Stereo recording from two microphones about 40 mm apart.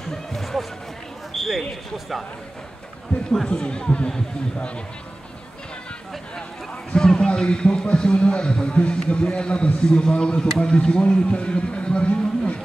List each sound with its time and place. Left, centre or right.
0.1 s music: centre
1.3 s a sound: centre
3.4 s a man's voice: left
6.9 s a man's voice: centre